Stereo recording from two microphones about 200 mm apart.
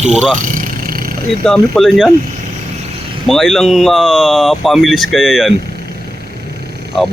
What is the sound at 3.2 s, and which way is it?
Speech, centre (ahead or behind).